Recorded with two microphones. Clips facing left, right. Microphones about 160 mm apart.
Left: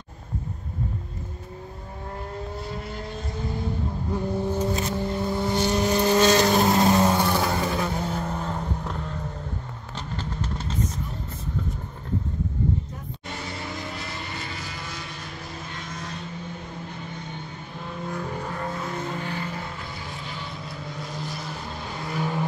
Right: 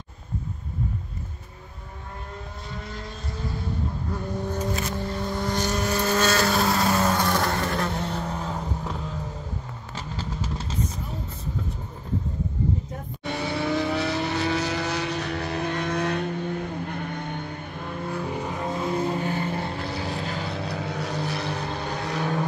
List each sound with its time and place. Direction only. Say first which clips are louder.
4.1 s vehicle: left 6 dB; 10° left (ahead or behind)
7.1 s vehicle: left 1 dB; 10° left (ahead or behind)
13.3 s vehicle: right 9 dB; 65° right (ahead or behind)
17.8 s vehicle: right 2 dB; 5° right (ahead or behind); by 19.7 s 30° right (ahead or behind)
19.8 s vehicle: right 7 dB; 75° right (ahead or behind)